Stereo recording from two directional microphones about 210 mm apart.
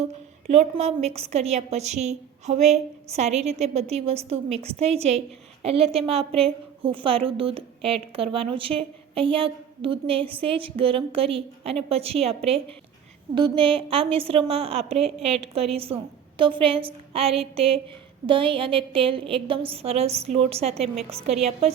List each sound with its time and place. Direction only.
0.4 s a woman's voice: 30° right (ahead or behind)